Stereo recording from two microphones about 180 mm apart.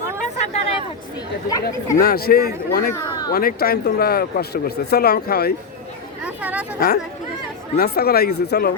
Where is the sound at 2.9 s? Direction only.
20° left (ahead or behind).